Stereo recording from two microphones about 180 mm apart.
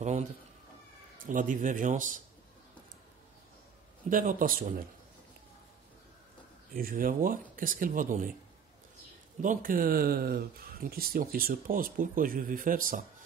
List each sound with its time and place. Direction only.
0.0 s cat: 40° right (ahead or behind)
1.1 s speech: 50° right (ahead or behind)
4.1 s speech: 50° right (ahead or behind)
6.7 s speech: 50° right (ahead or behind)
9.4 s speech: 50° right (ahead or behind)